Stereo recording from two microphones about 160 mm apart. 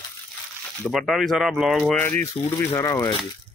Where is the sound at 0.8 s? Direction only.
Centre (ahead or behind).